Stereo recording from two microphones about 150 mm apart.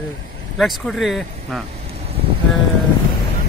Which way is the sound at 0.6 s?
Centre (ahead or behind).